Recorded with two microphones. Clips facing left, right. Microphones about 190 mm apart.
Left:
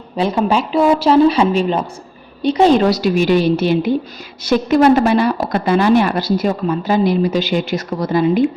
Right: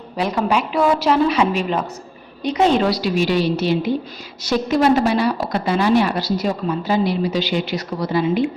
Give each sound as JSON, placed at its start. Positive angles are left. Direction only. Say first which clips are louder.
{"t": 0.2, "sound": "a woman's voice", "louder": "left 3 dB", "side_deg": 25}